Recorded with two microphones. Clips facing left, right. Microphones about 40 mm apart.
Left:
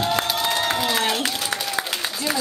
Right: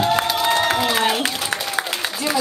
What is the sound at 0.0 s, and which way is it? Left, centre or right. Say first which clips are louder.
Crowd: right 4 dB; centre.